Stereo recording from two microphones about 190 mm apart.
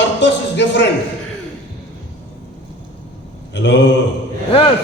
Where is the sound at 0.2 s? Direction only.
70° left (ahead or behind).